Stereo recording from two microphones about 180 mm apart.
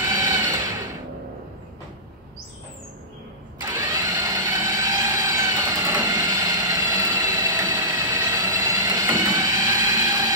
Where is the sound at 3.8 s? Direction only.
15° right (ahead or behind).